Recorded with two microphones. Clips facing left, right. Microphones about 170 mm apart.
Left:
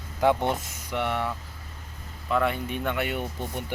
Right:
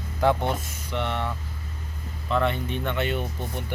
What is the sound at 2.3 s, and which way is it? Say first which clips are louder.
Speech: right 1 dB; 5° left (ahead or behind).